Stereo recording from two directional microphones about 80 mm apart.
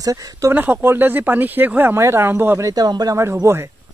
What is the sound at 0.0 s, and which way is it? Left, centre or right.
Speech, right.